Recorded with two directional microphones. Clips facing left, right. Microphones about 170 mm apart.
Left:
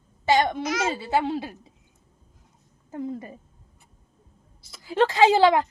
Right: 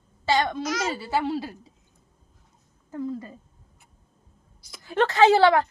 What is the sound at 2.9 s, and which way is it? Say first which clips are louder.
Speech: right 1 dB; 20° left (ahead or behind).